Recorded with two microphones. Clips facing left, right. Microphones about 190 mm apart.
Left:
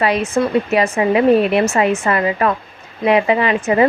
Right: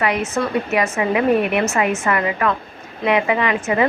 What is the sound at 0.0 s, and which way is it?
A woman's voice, 30° left (ahead or behind).